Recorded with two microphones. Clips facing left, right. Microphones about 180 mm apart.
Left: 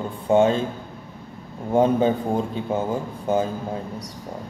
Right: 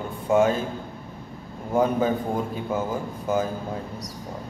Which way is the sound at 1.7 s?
25° left (ahead or behind).